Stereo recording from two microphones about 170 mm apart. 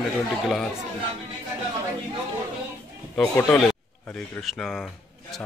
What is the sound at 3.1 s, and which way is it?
Speech, 10° left (ahead or behind).